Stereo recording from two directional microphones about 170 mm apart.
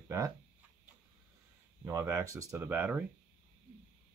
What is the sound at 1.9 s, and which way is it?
Speech, 20° right (ahead or behind).